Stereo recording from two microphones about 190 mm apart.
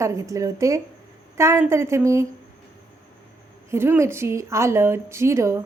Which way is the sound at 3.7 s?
15° right (ahead or behind).